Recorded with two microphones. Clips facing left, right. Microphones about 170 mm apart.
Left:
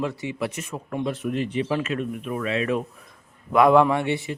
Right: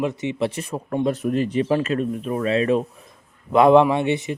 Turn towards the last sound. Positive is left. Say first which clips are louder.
# right 3 dB
turn(degrees=-20)  # may be behind; listen again after turning